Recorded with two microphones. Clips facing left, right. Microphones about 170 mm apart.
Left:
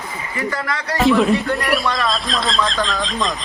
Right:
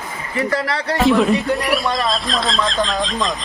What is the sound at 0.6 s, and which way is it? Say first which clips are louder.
Speech: right 3 dB; 30° right (ahead or behind).